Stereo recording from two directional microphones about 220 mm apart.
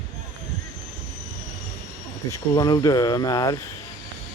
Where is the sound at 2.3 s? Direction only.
20° left (ahead or behind).